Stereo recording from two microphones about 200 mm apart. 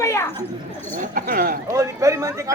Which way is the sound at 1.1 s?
45° right (ahead or behind).